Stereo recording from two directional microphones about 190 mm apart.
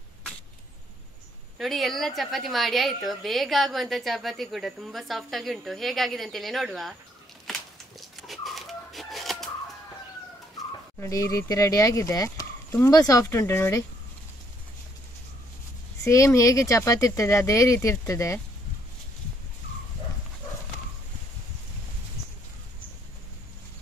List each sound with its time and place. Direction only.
1.6 s a woman's voice: centre (ahead or behind)
8.0 s chicken: centre (ahead or behind)
11.0 s speech: 15° left (ahead or behind)
16.0 s speech: 15° left (ahead or behind)